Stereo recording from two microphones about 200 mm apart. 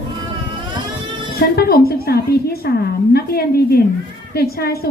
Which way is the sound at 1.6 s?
50° left (ahead or behind).